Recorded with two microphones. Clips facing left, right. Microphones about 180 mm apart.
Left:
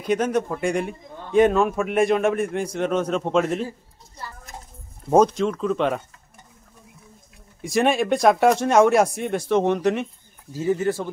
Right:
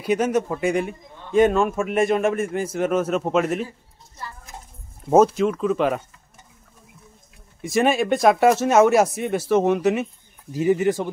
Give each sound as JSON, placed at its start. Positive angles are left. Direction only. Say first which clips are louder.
{"t": 0.0, "sound": "a man's voice", "louder": "right 1 dB", "side_deg": -5}
{"t": 5.1, "sound": "a man's voice", "louder": "right 1 dB", "side_deg": -5}
{"t": 7.6, "sound": "a man's voice", "louder": "right 1 dB", "side_deg": 0}
{"t": 10.5, "sound": "speech", "louder": "right 3 dB", "side_deg": -15}